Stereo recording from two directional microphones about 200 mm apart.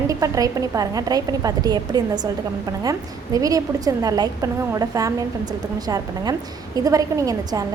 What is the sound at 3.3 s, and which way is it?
A woman's voice, 15° right (ahead or behind).